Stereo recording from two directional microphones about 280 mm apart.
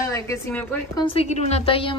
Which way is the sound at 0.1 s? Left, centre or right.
Centre.